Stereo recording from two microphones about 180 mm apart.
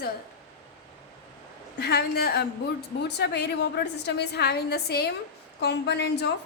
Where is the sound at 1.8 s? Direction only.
65° left (ahead or behind).